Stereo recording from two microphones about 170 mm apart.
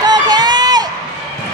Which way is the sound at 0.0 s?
25° right (ahead or behind).